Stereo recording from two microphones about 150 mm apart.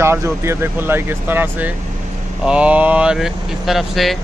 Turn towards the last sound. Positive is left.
turn(degrees=0)  # may be behind; listen again after turning